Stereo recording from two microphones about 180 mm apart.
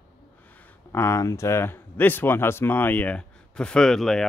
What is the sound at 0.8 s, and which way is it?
Speech, 15° left (ahead or behind).